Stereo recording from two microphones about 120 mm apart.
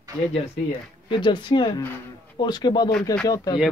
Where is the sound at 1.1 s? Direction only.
40° left (ahead or behind).